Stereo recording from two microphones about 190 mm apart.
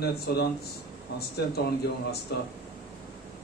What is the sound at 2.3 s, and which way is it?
Speech, 55° left (ahead or behind).